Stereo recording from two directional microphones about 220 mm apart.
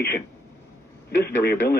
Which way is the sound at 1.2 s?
45° left (ahead or behind).